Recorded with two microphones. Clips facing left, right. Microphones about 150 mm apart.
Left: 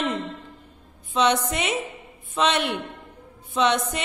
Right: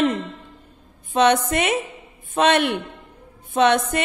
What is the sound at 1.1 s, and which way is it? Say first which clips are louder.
A woman's voice: right 4 dB; 55° right (ahead or behind).